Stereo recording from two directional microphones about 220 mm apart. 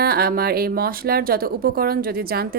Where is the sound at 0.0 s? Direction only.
45° right (ahead or behind).